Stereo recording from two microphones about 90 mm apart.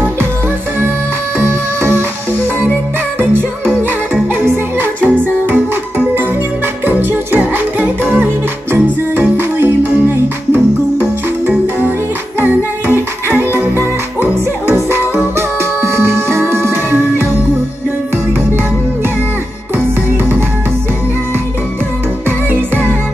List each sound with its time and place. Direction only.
1.8 s music: 25° right (ahead or behind)
3.2 s music: 25° right (ahead or behind)
13.6 s music: 20° right (ahead or behind)